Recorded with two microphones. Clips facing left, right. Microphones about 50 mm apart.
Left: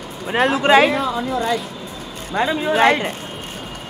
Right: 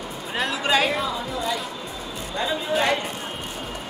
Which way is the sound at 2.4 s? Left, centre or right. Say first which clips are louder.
Left 7 dB; left.